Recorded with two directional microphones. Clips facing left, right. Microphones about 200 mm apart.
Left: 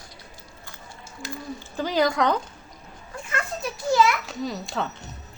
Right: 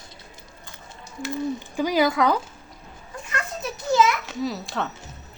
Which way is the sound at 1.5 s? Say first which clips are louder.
Even; 15° right (ahead or behind).